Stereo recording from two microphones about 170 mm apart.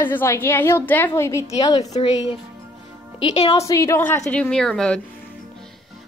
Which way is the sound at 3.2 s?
30° left (ahead or behind).